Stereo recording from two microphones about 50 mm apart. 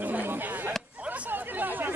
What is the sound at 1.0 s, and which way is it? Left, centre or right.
Chatter, right.